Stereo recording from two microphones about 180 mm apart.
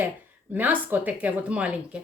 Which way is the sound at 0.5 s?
10° right (ahead or behind).